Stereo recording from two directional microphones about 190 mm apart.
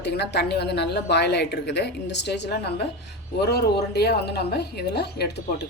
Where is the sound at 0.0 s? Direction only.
60° left (ahead or behind).